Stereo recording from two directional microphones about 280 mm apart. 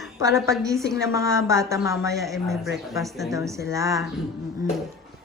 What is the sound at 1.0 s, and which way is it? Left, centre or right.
Speech, centre.